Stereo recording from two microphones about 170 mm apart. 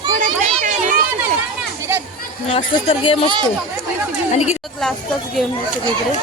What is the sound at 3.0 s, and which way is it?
Speech, 30° left (ahead or behind).